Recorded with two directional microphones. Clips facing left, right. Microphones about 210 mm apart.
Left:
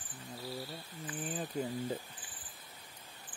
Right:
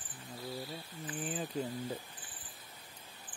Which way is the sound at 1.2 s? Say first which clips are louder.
Right 1 dB; 5° right (ahead or behind).